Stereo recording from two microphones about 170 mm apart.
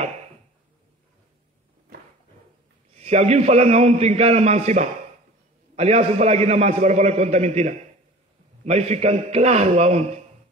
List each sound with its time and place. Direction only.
3.0 s a man's voice: 40° right (ahead or behind)